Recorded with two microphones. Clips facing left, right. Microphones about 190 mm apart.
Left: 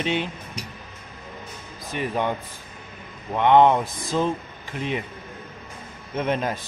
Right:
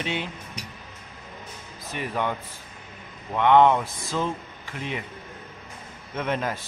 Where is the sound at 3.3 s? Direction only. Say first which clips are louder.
Left 1 dB; 20° left (ahead or behind).